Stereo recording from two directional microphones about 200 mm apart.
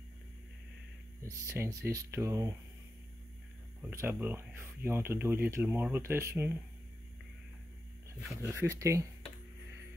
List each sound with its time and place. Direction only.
1.2 s speech: 15° right (ahead or behind)
3.9 s speech: 10° right (ahead or behind)
8.4 s speech: 15° right (ahead or behind)